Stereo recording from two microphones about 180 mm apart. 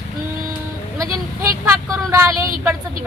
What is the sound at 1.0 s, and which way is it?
Vehicle, 15° right (ahead or behind).